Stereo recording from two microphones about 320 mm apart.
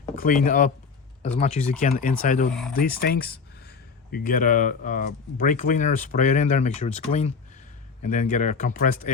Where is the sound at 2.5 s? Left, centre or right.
Centre.